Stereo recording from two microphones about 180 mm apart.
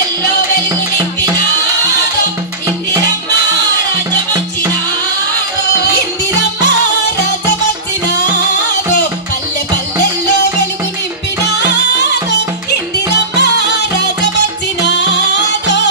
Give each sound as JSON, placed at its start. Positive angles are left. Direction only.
{"t": 11.4, "sound": "music", "side_deg": 70}